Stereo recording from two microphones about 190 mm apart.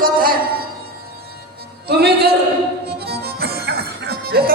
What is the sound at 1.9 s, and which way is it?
Speech, 55° right (ahead or behind).